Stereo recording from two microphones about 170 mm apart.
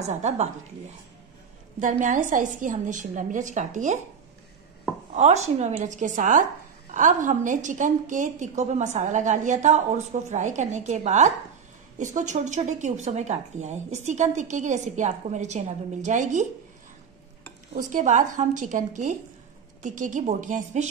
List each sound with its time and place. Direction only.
0.1 s a woman's voice: 40° right (ahead or behind)
1.8 s a woman's voice: 50° right (ahead or behind)
5.1 s a woman's voice: 40° right (ahead or behind)
17.7 s a woman's voice: 45° right (ahead or behind)